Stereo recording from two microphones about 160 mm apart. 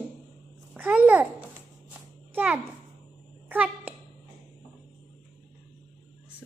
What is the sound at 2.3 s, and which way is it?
Speech, 10° right (ahead or behind).